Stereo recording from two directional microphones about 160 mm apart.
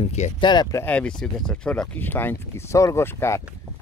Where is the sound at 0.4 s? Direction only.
25° left (ahead or behind).